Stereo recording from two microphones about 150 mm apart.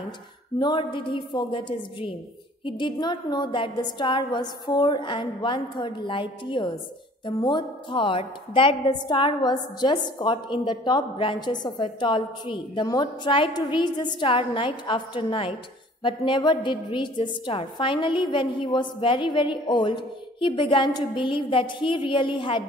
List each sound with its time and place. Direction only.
0.6 s a woman's voice: 30° left (ahead or behind)